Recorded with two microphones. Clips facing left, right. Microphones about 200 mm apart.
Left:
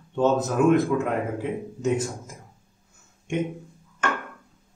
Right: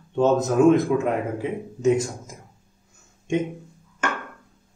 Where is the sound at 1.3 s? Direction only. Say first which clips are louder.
Right 1 dB; 10° right (ahead or behind).